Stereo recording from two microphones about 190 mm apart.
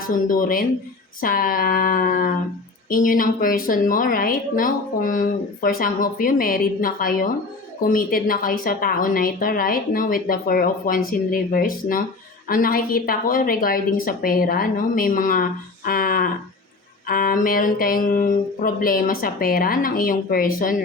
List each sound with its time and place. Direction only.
0.1 s speech: 45° left (ahead or behind)